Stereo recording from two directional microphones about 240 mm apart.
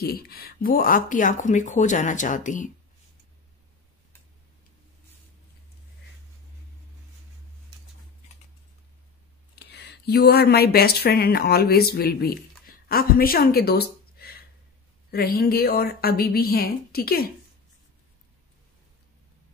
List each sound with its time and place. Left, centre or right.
0.0 s speech: left
9.6 s speech: left